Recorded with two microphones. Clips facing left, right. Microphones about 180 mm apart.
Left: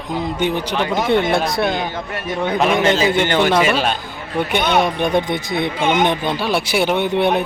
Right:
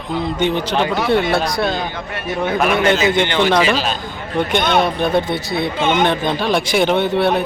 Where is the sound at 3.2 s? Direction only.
45° left (ahead or behind).